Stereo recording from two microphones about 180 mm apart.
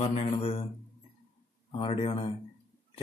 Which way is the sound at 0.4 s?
30° left (ahead or behind).